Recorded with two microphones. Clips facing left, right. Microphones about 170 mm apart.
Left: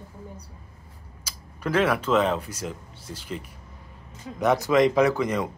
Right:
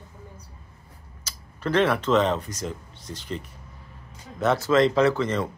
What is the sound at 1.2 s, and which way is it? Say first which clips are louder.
A woman's voice: right 1 dB; 10° left (ahead or behind).